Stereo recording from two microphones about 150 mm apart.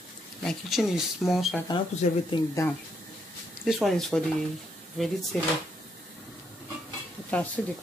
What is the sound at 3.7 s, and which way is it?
Speech, centre (ahead or behind).